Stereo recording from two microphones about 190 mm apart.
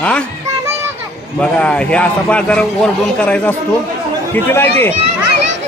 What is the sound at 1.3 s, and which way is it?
A man's voice, 5° left (ahead or behind).